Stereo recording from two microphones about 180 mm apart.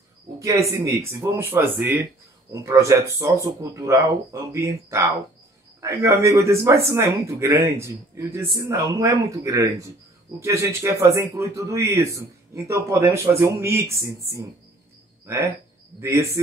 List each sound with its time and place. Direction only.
0.4 s a man's voice: 15° right (ahead or behind)